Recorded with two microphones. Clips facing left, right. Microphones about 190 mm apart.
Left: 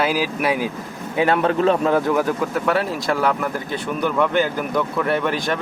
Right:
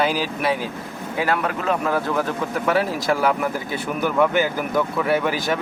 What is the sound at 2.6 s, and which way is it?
Speech, centre (ahead or behind).